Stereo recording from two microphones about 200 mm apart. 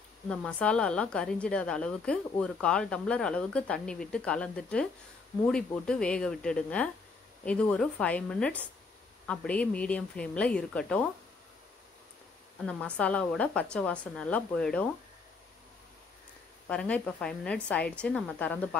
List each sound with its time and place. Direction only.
0.3 s a woman's voice: 5° left (ahead or behind)
12.6 s a woman's voice: 5° left (ahead or behind)
16.6 s a woman's voice: 5° left (ahead or behind)